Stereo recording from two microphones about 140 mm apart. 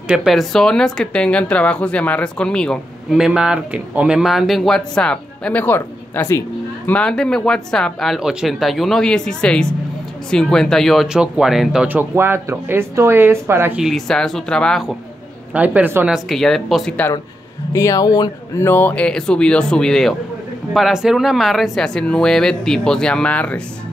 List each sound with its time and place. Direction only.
0.1 s speech: centre (ahead or behind); by 6.4 s 20° left (ahead or behind)
6.9 s speech: 5° left (ahead or behind); by 13.7 s 15° right (ahead or behind)
13.7 s speech: centre (ahead or behind)
15.5 s speech: 10° right (ahead or behind)
16.3 s speech: centre (ahead or behind)
17.7 s speech: 25° left (ahead or behind)
18.7 s speech: 15° left (ahead or behind)